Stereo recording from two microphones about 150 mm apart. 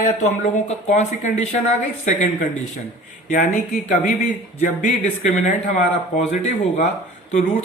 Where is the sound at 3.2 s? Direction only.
60° left (ahead or behind).